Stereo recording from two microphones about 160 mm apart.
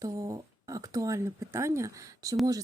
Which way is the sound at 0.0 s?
20° right (ahead or behind).